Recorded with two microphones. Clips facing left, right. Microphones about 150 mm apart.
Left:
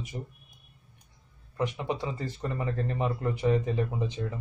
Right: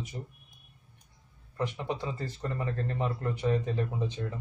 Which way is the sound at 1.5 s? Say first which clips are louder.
Left 2 dB; 15° left (ahead or behind).